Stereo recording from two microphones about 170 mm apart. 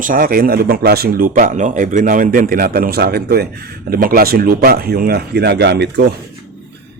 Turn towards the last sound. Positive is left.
turn(degrees=-85)